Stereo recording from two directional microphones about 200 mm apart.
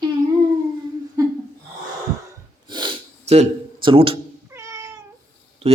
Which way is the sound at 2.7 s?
25° right (ahead or behind).